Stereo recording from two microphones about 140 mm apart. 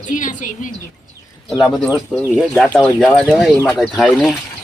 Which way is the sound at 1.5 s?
Centre (ahead or behind).